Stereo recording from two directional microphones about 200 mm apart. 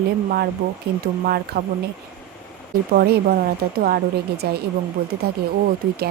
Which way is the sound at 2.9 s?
50° right (ahead or behind).